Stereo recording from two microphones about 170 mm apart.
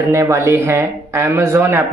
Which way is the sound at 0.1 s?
15° right (ahead or behind).